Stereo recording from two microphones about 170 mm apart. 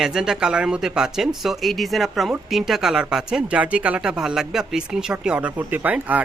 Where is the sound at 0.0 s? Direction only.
5° right (ahead or behind).